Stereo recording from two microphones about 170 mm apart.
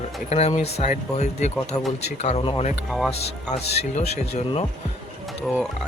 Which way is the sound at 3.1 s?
40° left (ahead or behind).